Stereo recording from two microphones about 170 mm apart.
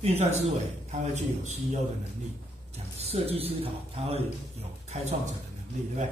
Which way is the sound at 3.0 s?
35° right (ahead or behind).